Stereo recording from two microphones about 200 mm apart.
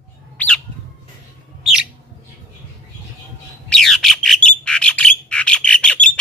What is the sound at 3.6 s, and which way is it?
Bird, centre (ahead or behind).